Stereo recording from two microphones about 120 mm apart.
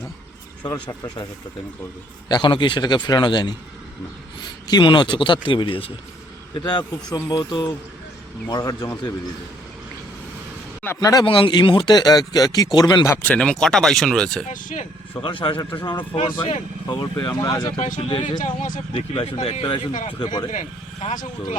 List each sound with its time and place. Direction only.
0.7 s speech: 30° left (ahead or behind)
2.3 s speech: 40° left (ahead or behind)
6.5 s speech: 35° left (ahead or behind)
11.0 s speech: 30° left (ahead or behind)
11.3 s speech: 45° left (ahead or behind)
13.2 s speech: 10° left (ahead or behind)
14.5 s speech: 90° left
15.2 s a man's voice: 45° left (ahead or behind)
18.4 s speech: 90° left
19.2 s speech: 55° left (ahead or behind)
19.6 s speech: 40° left (ahead or behind)
20.5 s speech: 90° left